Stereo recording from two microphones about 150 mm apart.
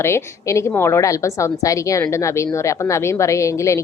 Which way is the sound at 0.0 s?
20° left (ahead or behind).